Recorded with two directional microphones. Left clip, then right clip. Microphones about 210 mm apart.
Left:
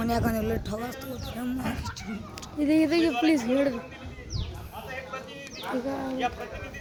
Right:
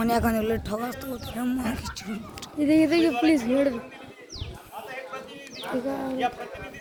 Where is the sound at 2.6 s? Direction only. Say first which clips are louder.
Right 2 dB; centre (ahead or behind).